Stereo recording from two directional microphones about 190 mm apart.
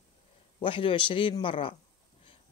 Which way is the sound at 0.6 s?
25° left (ahead or behind).